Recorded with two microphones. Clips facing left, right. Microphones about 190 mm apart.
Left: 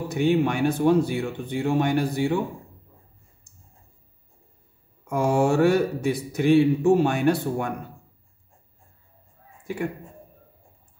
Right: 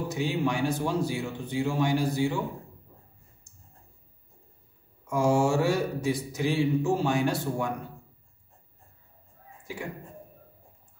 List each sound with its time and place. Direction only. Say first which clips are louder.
0.1 s speech: left 9 dB; 60° left (ahead or behind)
5.0 s speech: left 2 dB; 60° left (ahead or behind)
9.7 s speech: left 8 dB; 60° left (ahead or behind)